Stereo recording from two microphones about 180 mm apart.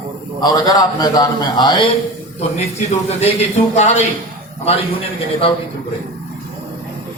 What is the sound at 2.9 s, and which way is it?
A man's voice, 35° left (ahead or behind).